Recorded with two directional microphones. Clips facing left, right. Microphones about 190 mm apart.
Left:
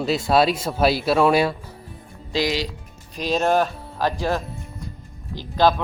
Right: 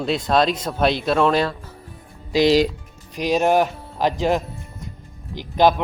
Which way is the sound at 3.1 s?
15° right (ahead or behind).